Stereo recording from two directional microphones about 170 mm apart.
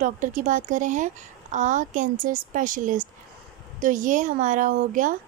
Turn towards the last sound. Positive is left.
turn(degrees=-50)  # may be behind; listen again after turning